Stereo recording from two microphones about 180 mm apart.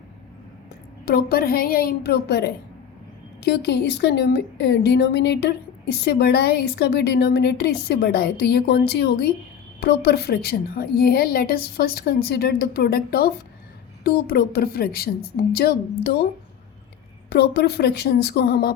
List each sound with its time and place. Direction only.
1.0 s a woman's voice: 60° left (ahead or behind)
17.2 s a woman's voice: 65° left (ahead or behind)